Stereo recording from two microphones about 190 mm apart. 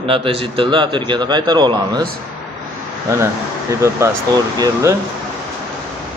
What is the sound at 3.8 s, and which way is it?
Speech, 15° right (ahead or behind).